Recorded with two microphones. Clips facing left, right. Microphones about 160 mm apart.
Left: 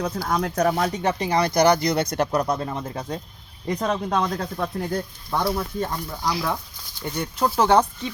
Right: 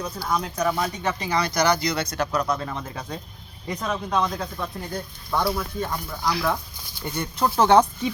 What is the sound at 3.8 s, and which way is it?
Speech, 35° left (ahead or behind).